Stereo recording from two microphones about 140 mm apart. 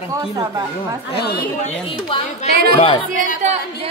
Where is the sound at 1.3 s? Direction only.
90° left.